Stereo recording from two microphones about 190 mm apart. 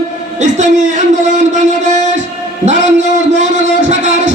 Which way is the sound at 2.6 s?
40° right (ahead or behind).